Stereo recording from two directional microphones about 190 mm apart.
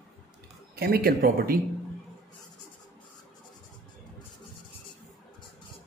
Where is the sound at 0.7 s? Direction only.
50° right (ahead or behind).